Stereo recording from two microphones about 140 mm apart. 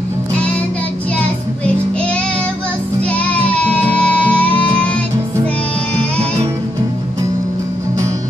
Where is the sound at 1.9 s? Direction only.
10° left (ahead or behind).